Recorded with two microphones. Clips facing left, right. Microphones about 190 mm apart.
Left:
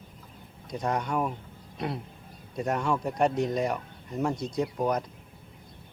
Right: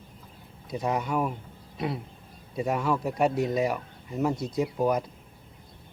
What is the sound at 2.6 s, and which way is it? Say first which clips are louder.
Speech: right 1 dB; 5° right (ahead or behind).